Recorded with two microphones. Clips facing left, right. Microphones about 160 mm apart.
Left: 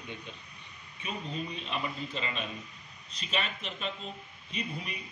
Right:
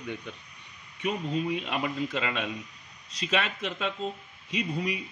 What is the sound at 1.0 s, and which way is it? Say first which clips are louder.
Speech: right 8 dB; 80° right.